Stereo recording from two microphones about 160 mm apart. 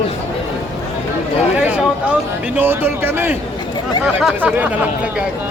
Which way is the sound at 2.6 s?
15° right (ahead or behind).